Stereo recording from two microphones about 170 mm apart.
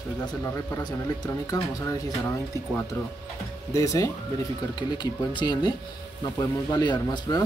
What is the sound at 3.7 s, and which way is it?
Speech, 20° left (ahead or behind).